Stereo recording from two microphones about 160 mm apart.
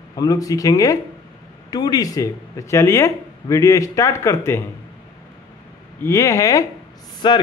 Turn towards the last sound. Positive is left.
turn(degrees=30)  # may be behind; listen again after turning